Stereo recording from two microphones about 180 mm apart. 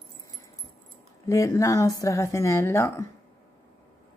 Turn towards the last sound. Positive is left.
turn(degrees=15)  # may be behind; listen again after turning